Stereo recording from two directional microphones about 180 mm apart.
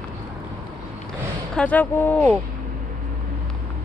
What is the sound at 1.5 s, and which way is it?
Speech, 10° left (ahead or behind).